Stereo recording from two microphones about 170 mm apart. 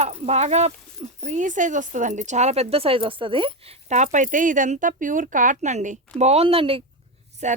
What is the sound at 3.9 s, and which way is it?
Speech, 45° right (ahead or behind).